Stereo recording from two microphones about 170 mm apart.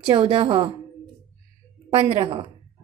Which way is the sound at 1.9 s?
35° right (ahead or behind).